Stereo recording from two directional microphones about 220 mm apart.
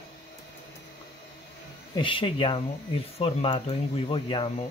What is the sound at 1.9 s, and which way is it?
Speech, 25° left (ahead or behind).